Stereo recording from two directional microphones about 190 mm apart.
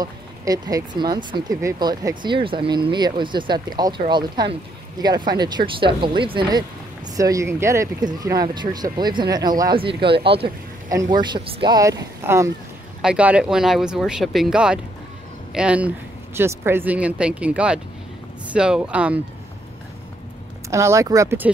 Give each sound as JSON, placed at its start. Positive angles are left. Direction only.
{"t": 0.0, "sound": "speech", "side_deg": -20}
{"t": 20.7, "sound": "speech", "side_deg": -15}